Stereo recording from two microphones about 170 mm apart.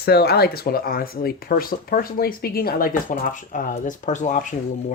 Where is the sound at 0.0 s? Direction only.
70° left (ahead or behind); by 4.4 s 45° left (ahead or behind).